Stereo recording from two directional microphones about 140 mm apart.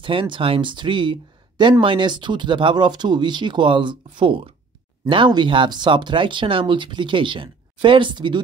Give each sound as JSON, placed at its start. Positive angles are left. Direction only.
{"t": 0.0, "sound": "speech", "side_deg": -35}